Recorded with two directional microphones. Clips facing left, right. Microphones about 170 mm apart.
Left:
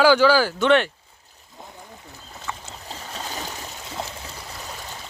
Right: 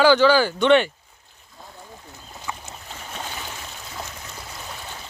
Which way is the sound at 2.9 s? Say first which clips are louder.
Left 1 dB; 40° left (ahead or behind).